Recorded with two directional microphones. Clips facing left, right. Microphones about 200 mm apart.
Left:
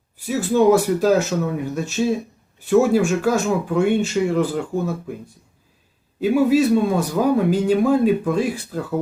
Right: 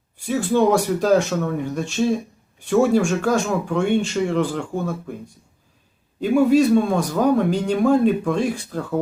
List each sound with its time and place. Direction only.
0.3 s speech: 5° left (ahead or behind)
6.1 s a man's voice: 5° left (ahead or behind)